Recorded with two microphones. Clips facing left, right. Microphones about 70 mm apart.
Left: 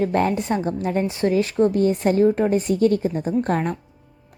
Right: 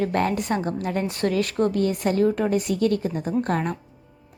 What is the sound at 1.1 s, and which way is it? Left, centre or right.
Speech, centre.